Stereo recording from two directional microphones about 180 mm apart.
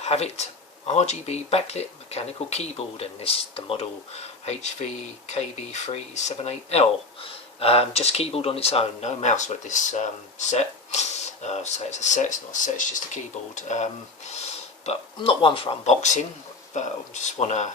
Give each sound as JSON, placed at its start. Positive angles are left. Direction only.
{"t": 0.0, "sound": "speech", "side_deg": 35}